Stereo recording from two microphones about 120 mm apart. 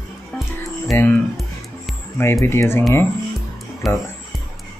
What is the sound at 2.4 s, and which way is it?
Speech, 20° left (ahead or behind).